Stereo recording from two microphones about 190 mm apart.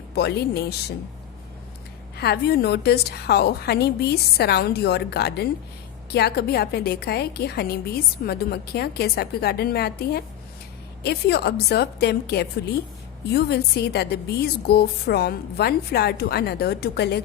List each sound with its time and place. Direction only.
0.1 s a woman's voice: 60° left (ahead or behind)
2.1 s a woman's voice: 60° left (ahead or behind)